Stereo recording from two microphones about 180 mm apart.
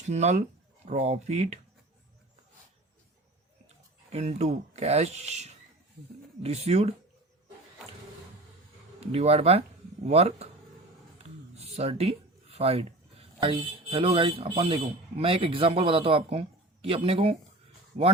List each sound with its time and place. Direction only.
0.1 s speech: 40° right (ahead or behind)
4.1 s speech: 35° right (ahead or behind)
9.1 s speech: 35° right (ahead or behind)